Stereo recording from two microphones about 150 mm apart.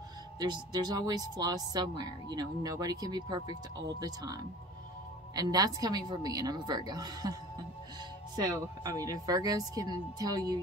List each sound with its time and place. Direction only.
0.4 s speech: 30° right (ahead or behind)
8.5 s speech: 25° right (ahead or behind)